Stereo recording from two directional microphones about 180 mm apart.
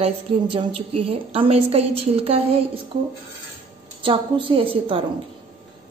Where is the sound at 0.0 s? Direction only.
30° right (ahead or behind).